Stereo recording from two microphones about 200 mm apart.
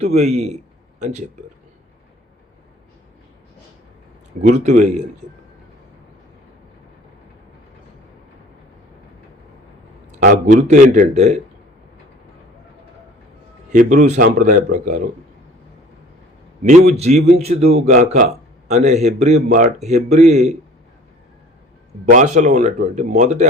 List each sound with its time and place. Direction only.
0.0 s speech: 30° right (ahead or behind)
4.4 s speech: 35° right (ahead or behind)
10.4 s speech: 35° right (ahead or behind)
13.7 s speech: 40° right (ahead or behind)
16.6 s speech: 35° right (ahead or behind)
22.0 s speech: 40° right (ahead or behind)